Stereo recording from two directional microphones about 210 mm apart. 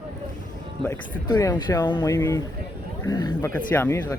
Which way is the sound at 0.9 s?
15° left (ahead or behind).